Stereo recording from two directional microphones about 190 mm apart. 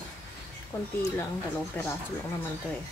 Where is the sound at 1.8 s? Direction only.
10° left (ahead or behind).